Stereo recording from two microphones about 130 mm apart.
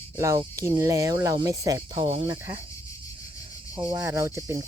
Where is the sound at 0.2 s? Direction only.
25° right (ahead or behind).